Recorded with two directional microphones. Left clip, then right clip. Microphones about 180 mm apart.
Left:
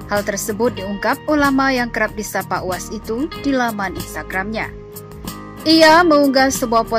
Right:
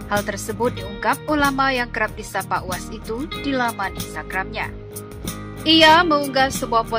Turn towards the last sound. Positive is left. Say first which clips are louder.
# left 4 dB
turn(degrees=20)  # may be behind; listen again after turning